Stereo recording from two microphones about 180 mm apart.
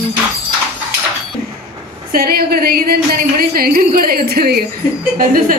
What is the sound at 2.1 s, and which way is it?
A woman's voice, 55° right (ahead or behind).